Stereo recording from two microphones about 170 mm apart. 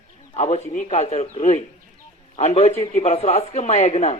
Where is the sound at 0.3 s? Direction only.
40° left (ahead or behind).